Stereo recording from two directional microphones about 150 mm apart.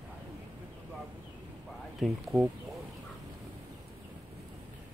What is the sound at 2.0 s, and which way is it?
Speech, centre (ahead or behind).